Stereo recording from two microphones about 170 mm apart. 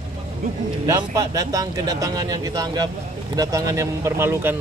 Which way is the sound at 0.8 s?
20° right (ahead or behind).